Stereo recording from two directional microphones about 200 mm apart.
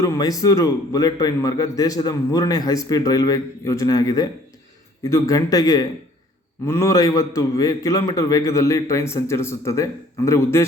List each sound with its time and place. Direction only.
0.0 s a man's voice: 15° left (ahead or behind)